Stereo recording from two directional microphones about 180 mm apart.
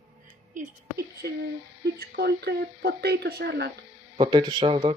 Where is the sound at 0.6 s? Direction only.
60° right (ahead or behind).